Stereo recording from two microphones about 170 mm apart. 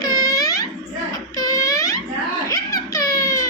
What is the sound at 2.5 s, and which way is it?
Giggle, 20° left (ahead or behind).